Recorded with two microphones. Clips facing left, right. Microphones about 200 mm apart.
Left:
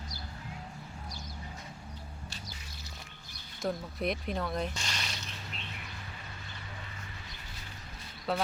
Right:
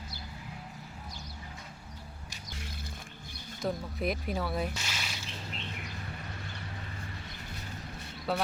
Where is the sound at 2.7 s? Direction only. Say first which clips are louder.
Right 6 dB; 55° right (ahead or behind).